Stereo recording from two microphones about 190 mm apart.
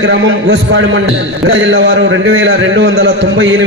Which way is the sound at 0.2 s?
75° right (ahead or behind).